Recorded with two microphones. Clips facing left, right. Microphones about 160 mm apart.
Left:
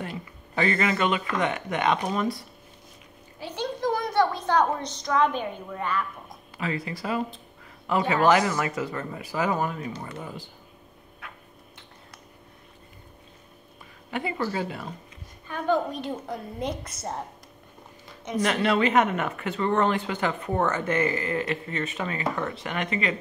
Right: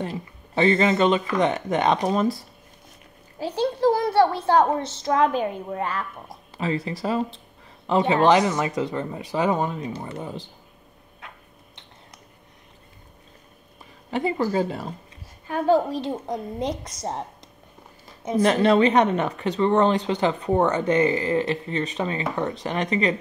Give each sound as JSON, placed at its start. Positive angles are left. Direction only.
{"t": 0.1, "sound": "a woman's voice", "side_deg": -25}
{"t": 3.3, "sound": "a sound", "side_deg": -35}
{"t": 5.0, "sound": "a woman's voice", "side_deg": -35}
{"t": 14.4, "sound": "a woman's voice", "side_deg": -40}
{"t": 18.3, "sound": "a woman's voice", "side_deg": -35}